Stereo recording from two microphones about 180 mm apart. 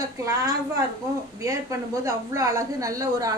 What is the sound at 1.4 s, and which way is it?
A woman's voice, 15° right (ahead or behind).